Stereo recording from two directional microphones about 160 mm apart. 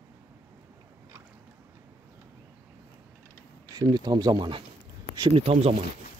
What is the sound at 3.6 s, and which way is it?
Speech, 25° right (ahead or behind).